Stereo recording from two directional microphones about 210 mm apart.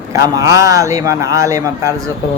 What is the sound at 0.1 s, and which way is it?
A man's voice, 15° right (ahead or behind).